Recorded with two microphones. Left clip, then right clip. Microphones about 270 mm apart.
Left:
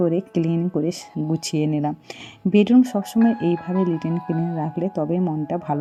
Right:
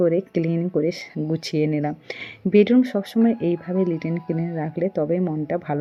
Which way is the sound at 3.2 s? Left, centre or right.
Left.